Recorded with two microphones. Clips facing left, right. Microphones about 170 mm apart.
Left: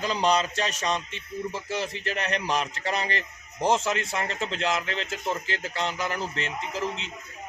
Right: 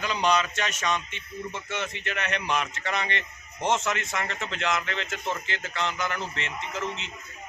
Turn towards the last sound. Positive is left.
turn(degrees=35)  # may be behind; listen again after turning